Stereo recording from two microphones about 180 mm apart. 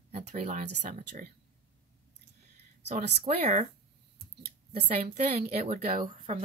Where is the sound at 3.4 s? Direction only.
40° right (ahead or behind).